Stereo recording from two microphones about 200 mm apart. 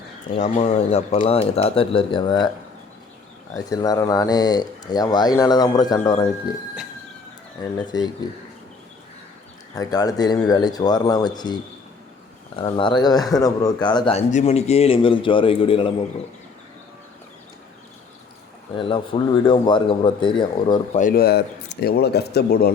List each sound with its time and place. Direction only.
0.3 s speech: 35° left (ahead or behind)
3.5 s speech: 20° left (ahead or behind)
7.6 s speech: 20° left (ahead or behind)
9.7 s speech: 20° left (ahead or behind)
18.8 s speech: 25° left (ahead or behind)
20.9 s speech: 45° left (ahead or behind)